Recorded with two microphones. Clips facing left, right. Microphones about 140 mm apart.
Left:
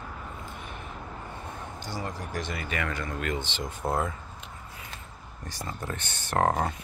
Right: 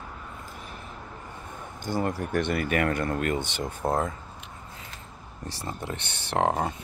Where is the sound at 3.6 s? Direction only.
25° right (ahead or behind).